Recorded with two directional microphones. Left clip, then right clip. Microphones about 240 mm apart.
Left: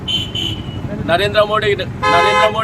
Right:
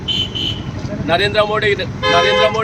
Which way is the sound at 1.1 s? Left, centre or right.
Centre.